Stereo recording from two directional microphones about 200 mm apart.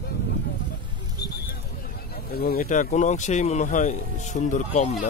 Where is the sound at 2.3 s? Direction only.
45° left (ahead or behind).